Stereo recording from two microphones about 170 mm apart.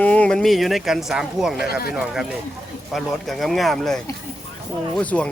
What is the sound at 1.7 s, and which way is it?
Speech, 60° left (ahead or behind).